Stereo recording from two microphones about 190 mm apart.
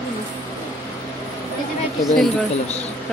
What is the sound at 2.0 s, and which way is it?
Speech, centre (ahead or behind).